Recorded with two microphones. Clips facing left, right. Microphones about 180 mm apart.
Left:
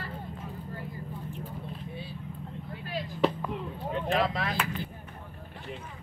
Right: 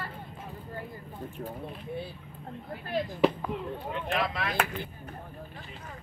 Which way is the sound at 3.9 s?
40° left (ahead or behind).